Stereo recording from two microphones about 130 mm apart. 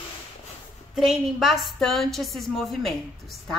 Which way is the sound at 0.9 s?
Centre (ahead or behind).